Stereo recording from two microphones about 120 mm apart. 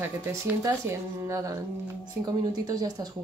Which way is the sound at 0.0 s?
20° right (ahead or behind).